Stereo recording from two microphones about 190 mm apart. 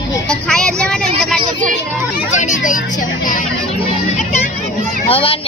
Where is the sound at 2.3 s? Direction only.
40° left (ahead or behind).